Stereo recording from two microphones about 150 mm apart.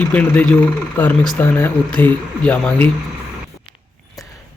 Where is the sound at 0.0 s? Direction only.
10° left (ahead or behind).